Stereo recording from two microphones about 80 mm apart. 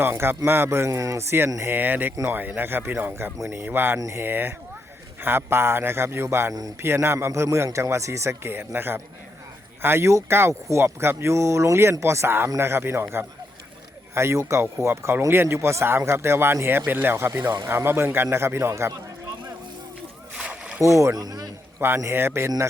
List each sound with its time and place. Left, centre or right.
0.0 s speech: right
1.7 s speech: right
17.4 s speech: right
17.7 s speech: right
20.3 s splash: centre
20.8 s speech: right
21.8 s speech: right